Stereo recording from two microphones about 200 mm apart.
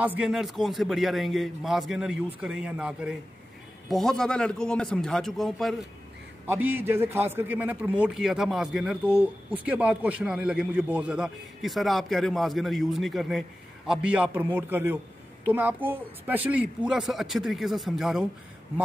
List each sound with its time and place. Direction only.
0.0 s a man's voice: 5° right (ahead or behind)
6.4 s a man's voice: 10° right (ahead or behind)